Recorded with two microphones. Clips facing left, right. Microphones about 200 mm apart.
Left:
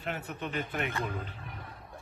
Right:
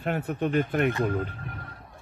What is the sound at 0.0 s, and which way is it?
Speech, 50° right (ahead or behind).